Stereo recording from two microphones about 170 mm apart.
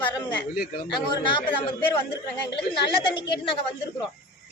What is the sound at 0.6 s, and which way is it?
Speech, 70° left (ahead or behind).